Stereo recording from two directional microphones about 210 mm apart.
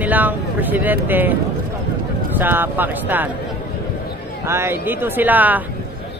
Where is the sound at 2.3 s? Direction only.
10° right (ahead or behind).